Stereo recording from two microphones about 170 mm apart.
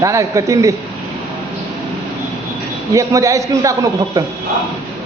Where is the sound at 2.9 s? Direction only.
20° right (ahead or behind).